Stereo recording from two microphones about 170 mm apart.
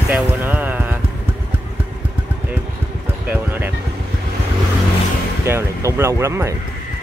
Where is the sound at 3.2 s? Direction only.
10° right (ahead or behind).